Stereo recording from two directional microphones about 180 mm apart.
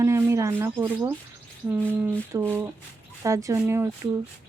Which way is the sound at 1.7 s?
10° right (ahead or behind).